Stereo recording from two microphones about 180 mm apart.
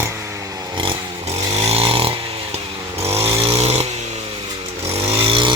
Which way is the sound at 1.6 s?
30° right (ahead or behind).